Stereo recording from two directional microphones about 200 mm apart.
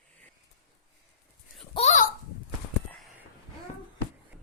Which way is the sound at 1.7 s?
35° left (ahead or behind).